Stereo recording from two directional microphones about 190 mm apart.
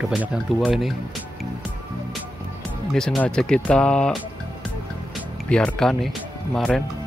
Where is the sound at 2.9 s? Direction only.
Centre (ahead or behind).